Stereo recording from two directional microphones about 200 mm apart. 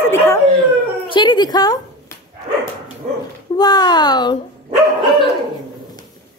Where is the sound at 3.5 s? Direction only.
20° left (ahead or behind).